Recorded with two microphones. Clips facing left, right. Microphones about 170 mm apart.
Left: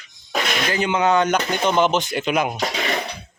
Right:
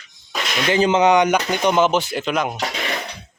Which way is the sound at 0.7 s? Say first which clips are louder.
Right 7 dB; 30° right (ahead or behind).